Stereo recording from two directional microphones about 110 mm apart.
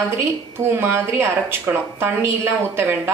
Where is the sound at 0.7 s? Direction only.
20° right (ahead or behind).